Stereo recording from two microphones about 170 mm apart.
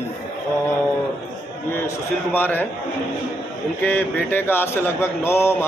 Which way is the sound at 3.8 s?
10° left (ahead or behind).